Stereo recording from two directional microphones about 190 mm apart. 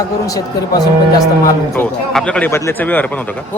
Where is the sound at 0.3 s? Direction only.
20° left (ahead or behind).